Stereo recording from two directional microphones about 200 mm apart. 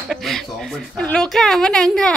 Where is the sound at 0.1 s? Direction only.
Centre (ahead or behind).